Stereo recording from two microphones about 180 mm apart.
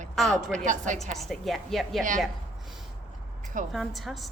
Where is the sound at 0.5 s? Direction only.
45° right (ahead or behind).